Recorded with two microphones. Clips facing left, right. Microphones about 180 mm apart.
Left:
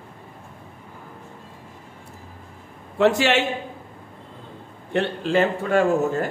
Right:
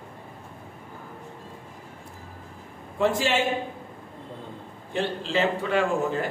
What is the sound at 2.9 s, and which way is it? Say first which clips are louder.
Speech: left 5 dB; 75° left (ahead or behind).